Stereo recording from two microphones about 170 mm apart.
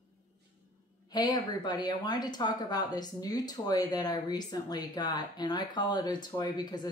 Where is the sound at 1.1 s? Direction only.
25° left (ahead or behind).